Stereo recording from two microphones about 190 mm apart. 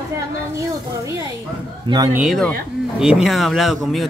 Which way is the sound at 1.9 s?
15° right (ahead or behind).